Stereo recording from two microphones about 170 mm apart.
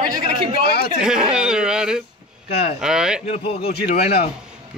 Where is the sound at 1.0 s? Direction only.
5° right (ahead or behind).